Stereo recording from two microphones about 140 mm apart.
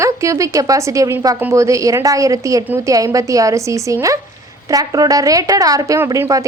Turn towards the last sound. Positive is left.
turn(degrees=-20)  # may be behind; listen again after turning